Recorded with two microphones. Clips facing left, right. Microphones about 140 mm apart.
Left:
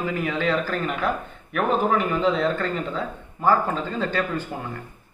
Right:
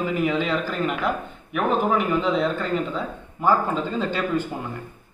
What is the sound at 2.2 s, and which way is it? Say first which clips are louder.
A man's voice: left 1 dB; 15° right (ahead or behind).